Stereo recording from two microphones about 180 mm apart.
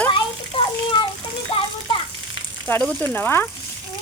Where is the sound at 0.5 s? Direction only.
30° left (ahead or behind).